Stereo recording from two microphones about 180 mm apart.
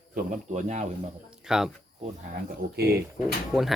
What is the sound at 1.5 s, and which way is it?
Speech, 5° right (ahead or behind).